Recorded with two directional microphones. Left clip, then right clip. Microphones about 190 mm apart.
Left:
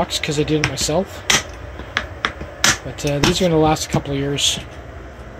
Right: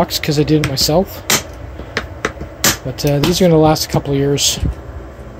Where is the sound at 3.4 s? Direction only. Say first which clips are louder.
Right 7 dB; 25° right (ahead or behind).